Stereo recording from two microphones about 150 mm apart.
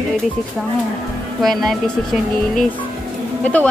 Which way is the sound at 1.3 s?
Centre (ahead or behind).